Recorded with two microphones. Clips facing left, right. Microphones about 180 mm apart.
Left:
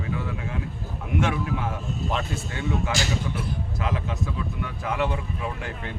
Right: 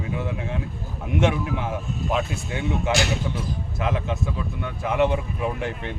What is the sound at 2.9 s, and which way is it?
Speech, 65° right (ahead or behind).